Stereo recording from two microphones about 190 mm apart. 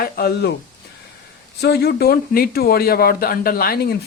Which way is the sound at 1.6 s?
60° left (ahead or behind).